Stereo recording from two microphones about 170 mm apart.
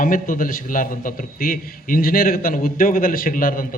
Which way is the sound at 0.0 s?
55° left (ahead or behind).